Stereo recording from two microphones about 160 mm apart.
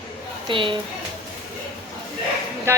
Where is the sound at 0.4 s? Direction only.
30° right (ahead or behind).